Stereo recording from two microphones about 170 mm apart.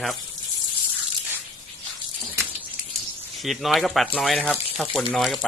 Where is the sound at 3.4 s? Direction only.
Centre (ahead or behind).